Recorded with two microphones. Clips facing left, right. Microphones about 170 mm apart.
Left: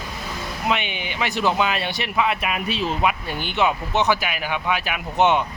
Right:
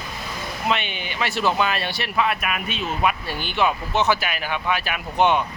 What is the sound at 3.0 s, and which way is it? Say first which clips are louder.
Speech: even; 15° left (ahead or behind).